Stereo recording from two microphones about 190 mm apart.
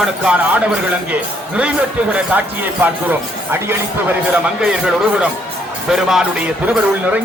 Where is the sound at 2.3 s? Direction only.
10° right (ahead or behind).